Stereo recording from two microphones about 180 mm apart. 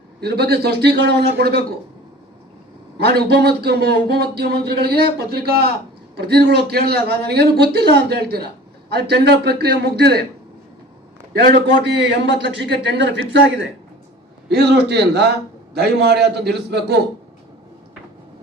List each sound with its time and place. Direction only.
0.2 s a man's voice: 65° right (ahead or behind)
3.0 s a man's voice: 65° right (ahead or behind)
11.4 s a man's voice: 65° right (ahead or behind)
14.5 s a man's voice: 65° right (ahead or behind)